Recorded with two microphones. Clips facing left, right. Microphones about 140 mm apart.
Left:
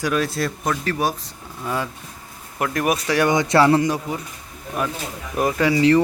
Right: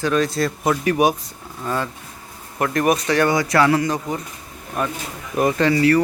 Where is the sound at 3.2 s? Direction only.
25° left (ahead or behind).